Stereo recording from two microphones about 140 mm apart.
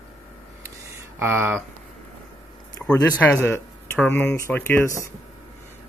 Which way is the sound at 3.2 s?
15° left (ahead or behind).